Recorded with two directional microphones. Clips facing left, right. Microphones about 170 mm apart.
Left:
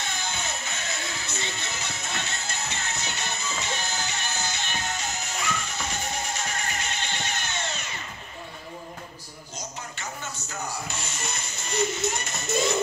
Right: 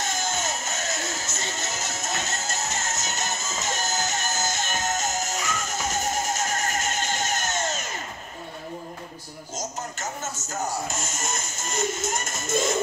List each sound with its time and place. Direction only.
0.0 s music: 45° right (ahead or behind)
9.6 s music: 45° right (ahead or behind)